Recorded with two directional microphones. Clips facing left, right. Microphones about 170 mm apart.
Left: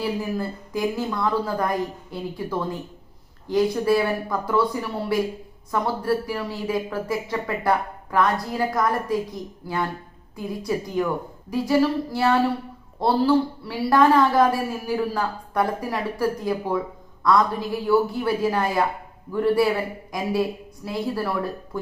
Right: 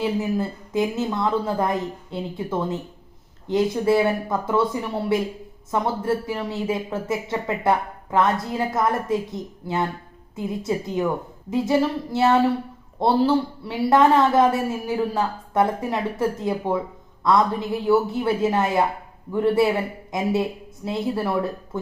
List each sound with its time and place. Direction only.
0.0 s speech: 20° right (ahead or behind)